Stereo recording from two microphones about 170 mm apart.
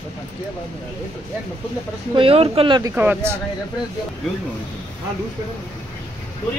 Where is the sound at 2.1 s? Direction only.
35° right (ahead or behind).